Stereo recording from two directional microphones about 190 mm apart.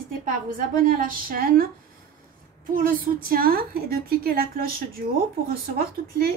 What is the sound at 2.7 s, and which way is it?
A woman's voice, 50° right (ahead or behind).